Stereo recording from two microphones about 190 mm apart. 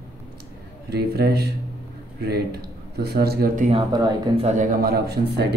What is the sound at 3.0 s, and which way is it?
Speech, 55° right (ahead or behind).